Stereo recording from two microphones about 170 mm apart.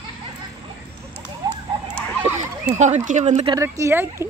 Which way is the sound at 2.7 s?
45° right (ahead or behind).